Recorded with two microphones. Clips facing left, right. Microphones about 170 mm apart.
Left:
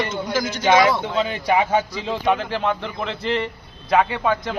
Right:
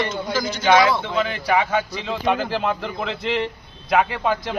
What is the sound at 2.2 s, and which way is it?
Speech, centre (ahead or behind).